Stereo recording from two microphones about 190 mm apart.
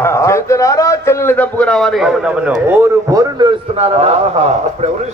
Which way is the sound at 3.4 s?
30° right (ahead or behind).